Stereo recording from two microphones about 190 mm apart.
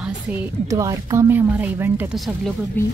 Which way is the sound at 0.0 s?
10° right (ahead or behind).